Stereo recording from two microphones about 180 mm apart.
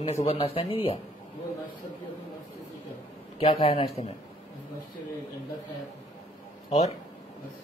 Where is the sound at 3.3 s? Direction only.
35° left (ahead or behind).